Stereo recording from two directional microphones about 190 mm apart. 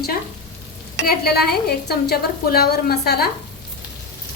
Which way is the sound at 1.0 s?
55° left (ahead or behind).